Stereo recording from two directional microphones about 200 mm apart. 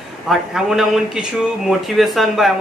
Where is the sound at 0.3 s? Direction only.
Centre (ahead or behind).